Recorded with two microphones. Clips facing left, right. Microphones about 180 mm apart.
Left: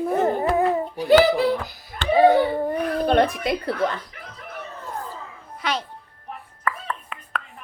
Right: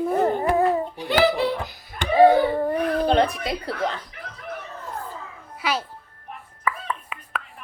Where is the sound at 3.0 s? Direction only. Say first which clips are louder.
Left 4 dB; 50° left (ahead or behind).